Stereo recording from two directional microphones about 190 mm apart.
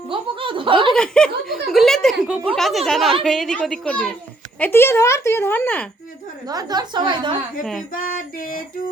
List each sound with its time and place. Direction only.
0.1 s a woman's voice: 25° right (ahead or behind)
0.9 s a woman's voice: 5° left (ahead or behind)
6.5 s a woman's voice: 20° right (ahead or behind)
7.6 s speech: centre (ahead or behind)
7.9 s a sound: 45° left (ahead or behind)